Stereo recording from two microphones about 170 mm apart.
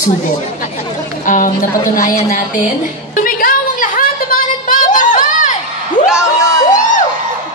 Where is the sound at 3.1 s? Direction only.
55° left (ahead or behind).